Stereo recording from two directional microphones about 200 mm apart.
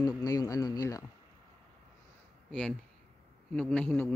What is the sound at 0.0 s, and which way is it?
Speech, 20° left (ahead or behind).